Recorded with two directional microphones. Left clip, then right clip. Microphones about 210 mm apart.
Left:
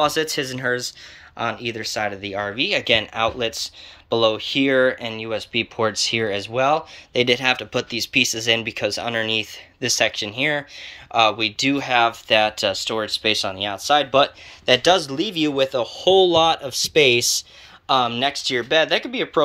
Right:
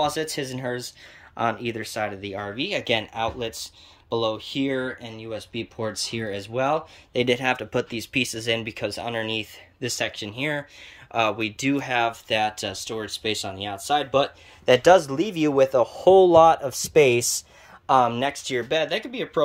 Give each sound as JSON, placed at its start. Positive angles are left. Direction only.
{"t": 0.0, "sound": "speech", "side_deg": -5}
{"t": 14.7, "sound": "speech", "side_deg": -20}